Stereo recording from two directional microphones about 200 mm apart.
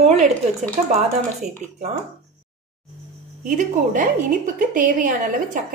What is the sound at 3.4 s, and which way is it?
A woman's voice, 40° right (ahead or behind).